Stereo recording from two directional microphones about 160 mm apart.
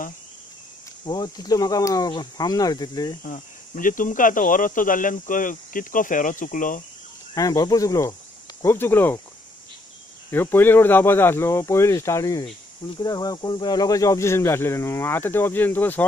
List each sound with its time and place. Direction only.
1.0 s speech: 25° left (ahead or behind)
3.3 s speech: 60° left (ahead or behind)
7.3 s speech: 20° left (ahead or behind)
10.3 s speech: 15° left (ahead or behind)